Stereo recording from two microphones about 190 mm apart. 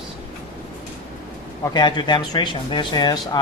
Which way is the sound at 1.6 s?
25° left (ahead or behind).